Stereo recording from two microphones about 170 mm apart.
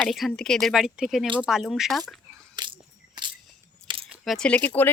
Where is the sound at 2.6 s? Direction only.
25° right (ahead or behind).